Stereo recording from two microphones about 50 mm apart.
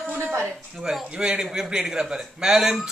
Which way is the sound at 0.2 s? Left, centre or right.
Right.